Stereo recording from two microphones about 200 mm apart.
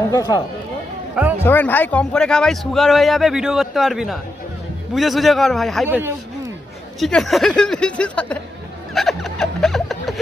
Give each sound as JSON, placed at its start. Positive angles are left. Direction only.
{"t": 0.1, "sound": "speech", "side_deg": 15}
{"t": 1.4, "sound": "a man's voice", "side_deg": 10}
{"t": 5.9, "sound": "speech", "side_deg": -10}
{"t": 7.0, "sound": "a man's voice", "side_deg": 0}
{"t": 8.9, "sound": "a sound", "side_deg": 0}